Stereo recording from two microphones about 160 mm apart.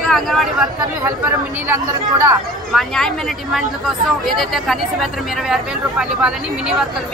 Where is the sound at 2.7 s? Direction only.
Centre (ahead or behind).